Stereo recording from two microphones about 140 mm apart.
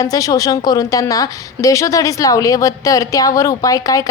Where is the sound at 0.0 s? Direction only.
25° left (ahead or behind).